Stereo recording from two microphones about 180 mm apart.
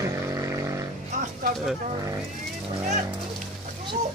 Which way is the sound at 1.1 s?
40° right (ahead or behind).